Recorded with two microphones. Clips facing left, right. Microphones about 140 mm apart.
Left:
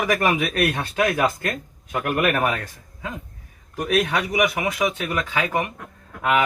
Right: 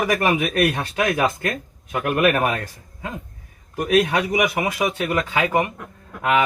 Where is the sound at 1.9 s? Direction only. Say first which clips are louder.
Right 3 dB; 20° right (ahead or behind).